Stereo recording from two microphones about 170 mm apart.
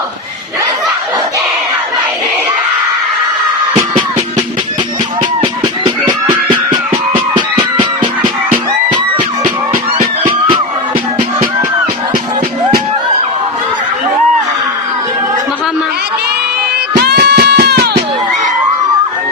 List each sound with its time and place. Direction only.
3.8 s music: 25° right (ahead or behind)
5.4 s a sound: 25° right (ahead or behind)
10.0 s music: 30° right (ahead or behind)
17.0 s music: 70° right (ahead or behind)